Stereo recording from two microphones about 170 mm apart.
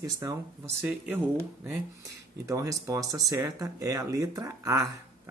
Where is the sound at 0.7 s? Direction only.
10° right (ahead or behind).